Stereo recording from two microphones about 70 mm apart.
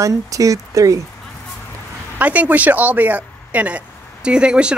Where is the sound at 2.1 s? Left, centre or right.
Right.